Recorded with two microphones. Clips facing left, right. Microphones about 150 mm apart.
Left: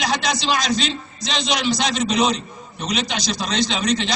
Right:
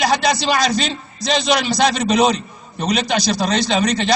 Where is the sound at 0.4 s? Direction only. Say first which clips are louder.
Right 3 dB; 50° right (ahead or behind).